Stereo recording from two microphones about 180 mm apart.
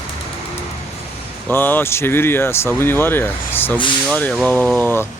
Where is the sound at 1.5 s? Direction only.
10° left (ahead or behind).